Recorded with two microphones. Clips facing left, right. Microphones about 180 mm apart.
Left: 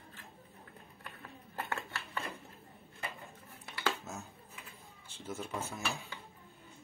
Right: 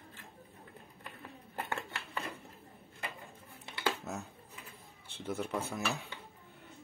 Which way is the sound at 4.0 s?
65° right (ahead or behind).